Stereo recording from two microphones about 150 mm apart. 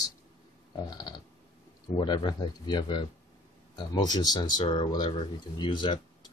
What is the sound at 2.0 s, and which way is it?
Speech, 30° left (ahead or behind).